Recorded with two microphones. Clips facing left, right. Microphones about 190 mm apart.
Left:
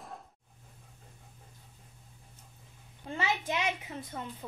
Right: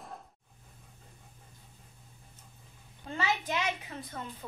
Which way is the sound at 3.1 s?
20° left (ahead or behind).